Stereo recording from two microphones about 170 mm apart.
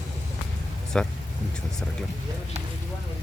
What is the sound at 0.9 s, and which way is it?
Speech, 5° left (ahead or behind).